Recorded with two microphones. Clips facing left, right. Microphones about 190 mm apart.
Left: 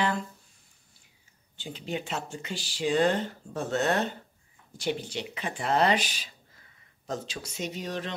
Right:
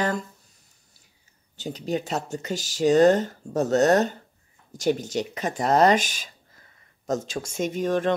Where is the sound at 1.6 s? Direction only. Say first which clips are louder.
Right 7 dB; 40° right (ahead or behind).